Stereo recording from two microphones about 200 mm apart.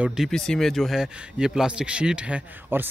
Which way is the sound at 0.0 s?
Centre (ahead or behind).